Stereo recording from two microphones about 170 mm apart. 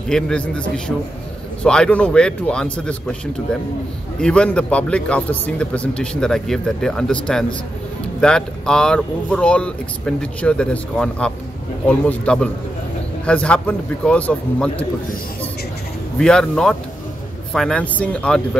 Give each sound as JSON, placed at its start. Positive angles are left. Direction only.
{"t": 0.1, "sound": "a man's voice", "side_deg": 5}
{"t": 4.2, "sound": "a man's voice", "side_deg": 5}
{"t": 16.2, "sound": "a man's voice", "side_deg": 5}